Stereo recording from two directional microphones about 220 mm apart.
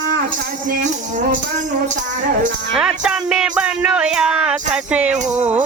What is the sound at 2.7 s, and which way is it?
Music, 5° right (ahead or behind).